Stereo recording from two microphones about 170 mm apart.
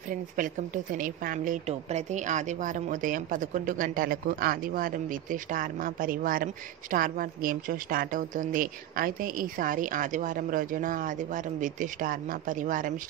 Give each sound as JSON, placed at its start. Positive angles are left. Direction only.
{"t": 0.4, "sound": "a woman's voice", "side_deg": -55}